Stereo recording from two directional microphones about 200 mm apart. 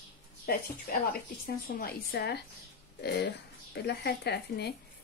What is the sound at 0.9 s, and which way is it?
Speech, 50° left (ahead or behind).